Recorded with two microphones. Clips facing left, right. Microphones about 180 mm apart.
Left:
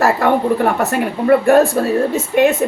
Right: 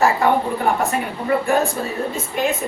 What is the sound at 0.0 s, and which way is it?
Speech, 70° left (ahead or behind).